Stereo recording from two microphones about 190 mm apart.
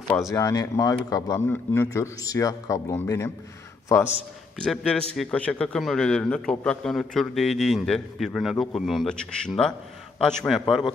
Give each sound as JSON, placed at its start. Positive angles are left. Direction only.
{"t": 0.3, "sound": "a man's voice", "side_deg": 20}
{"t": 4.6, "sound": "a man's voice", "side_deg": 5}